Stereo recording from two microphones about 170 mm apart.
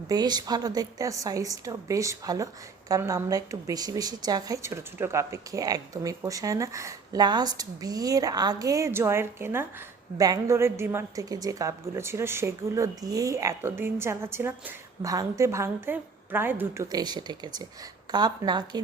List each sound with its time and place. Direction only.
0.1 s a woman's voice: 25° right (ahead or behind)
16.9 s a woman's voice: 25° right (ahead or behind)